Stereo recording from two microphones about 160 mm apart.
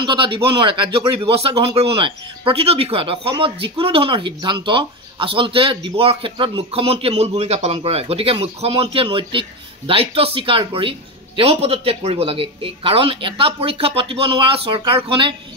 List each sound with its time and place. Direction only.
0.0 s speech: 30° right (ahead or behind)